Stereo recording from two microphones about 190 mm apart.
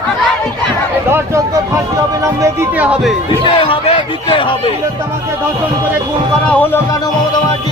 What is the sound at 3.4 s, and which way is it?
Speech, 30° left (ahead or behind).